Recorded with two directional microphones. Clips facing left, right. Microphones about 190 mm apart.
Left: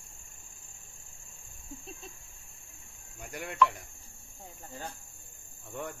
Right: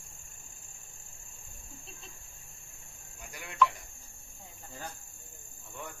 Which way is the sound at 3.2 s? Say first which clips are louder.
Left 7 dB; 50° left (ahead or behind).